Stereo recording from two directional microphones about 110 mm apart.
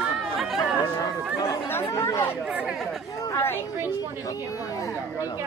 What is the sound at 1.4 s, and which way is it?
Speech, 20° left (ahead or behind).